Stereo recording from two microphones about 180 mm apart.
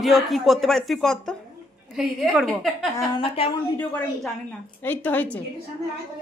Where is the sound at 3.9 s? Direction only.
Centre (ahead or behind).